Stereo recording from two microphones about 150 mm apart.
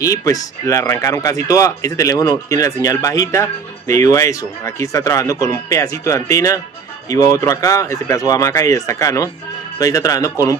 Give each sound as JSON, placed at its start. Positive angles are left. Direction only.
{"t": 0.0, "sound": "speech", "side_deg": 25}